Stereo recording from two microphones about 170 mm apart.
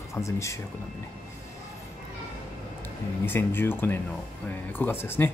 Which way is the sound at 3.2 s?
15° left (ahead or behind).